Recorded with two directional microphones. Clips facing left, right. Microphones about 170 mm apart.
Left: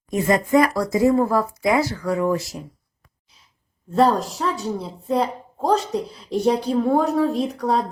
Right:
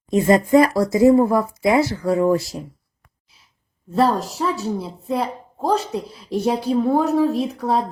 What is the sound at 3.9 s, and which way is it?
A woman's voice, centre (ahead or behind).